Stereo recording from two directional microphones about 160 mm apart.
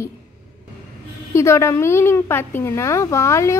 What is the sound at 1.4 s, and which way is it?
A woman's voice, 20° left (ahead or behind).